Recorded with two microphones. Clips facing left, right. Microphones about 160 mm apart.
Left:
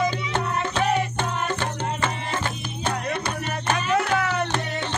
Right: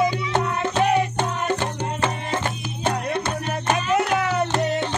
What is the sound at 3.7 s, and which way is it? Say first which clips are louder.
Music: right 2 dB; 20° right (ahead or behind).